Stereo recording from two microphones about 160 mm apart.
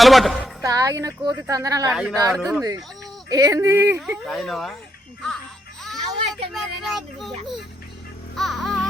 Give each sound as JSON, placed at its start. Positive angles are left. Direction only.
{"t": 0.0, "sound": "speech", "side_deg": 0}
{"t": 0.6, "sound": "a woman's voice", "side_deg": -20}
{"t": 1.9, "sound": "speech", "side_deg": -5}
{"t": 3.2, "sound": "a woman's voice", "side_deg": -20}
{"t": 4.3, "sound": "speech", "side_deg": 0}
{"t": 5.8, "sound": "music", "side_deg": 0}
{"t": 6.5, "sound": "speech", "side_deg": 0}
{"t": 8.4, "sound": "music", "side_deg": 0}